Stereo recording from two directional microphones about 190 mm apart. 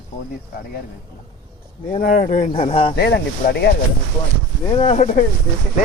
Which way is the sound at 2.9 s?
60° left (ahead or behind).